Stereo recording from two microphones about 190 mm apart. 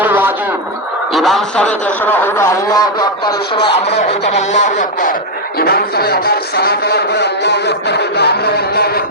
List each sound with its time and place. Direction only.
0.0 s radio: 10° right (ahead or behind)
1.1 s speech: centre (ahead or behind)
2.2 s a man's voice: 15° left (ahead or behind)
4.4 s speech: 40° left (ahead or behind)
5.5 s speech: 55° left (ahead or behind)